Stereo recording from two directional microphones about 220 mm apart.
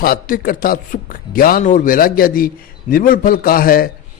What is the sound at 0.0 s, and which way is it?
A man's voice, 40° left (ahead or behind).